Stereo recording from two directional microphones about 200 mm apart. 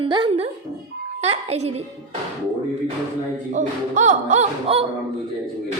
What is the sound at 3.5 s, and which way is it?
Speech, 35° right (ahead or behind).